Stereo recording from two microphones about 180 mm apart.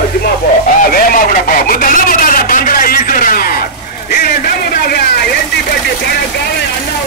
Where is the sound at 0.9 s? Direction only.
50° left (ahead or behind).